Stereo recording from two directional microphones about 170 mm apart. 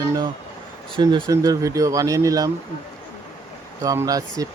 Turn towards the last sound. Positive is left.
turn(degrees=-20)  # may be behind; listen again after turning